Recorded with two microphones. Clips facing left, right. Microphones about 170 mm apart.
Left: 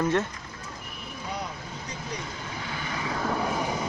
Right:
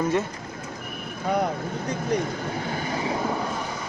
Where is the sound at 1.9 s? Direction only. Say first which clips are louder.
Right 12 dB; 50° right (ahead or behind).